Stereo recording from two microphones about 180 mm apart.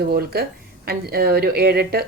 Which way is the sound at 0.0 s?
60° right (ahead or behind).